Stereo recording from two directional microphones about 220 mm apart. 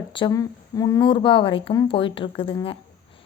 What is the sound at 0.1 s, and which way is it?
A woman's voice, 20° left (ahead or behind).